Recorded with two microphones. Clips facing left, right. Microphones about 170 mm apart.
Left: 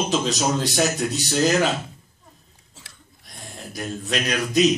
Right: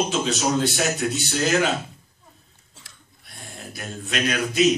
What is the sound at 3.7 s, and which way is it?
Speech, 40° left (ahead or behind).